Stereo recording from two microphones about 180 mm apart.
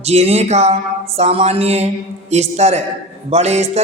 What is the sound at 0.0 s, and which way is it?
Speech, 35° right (ahead or behind).